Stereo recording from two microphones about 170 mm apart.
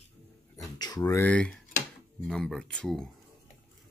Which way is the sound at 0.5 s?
20° left (ahead or behind).